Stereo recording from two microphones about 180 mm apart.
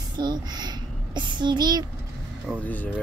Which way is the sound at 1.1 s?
25° right (ahead or behind).